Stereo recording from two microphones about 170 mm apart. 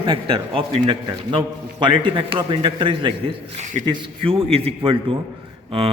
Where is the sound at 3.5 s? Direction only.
45° right (ahead or behind).